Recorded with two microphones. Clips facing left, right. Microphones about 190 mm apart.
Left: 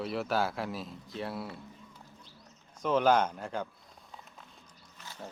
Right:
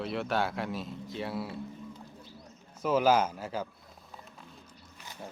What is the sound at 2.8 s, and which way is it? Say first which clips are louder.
Speech: right 1 dB; 5° right (ahead or behind).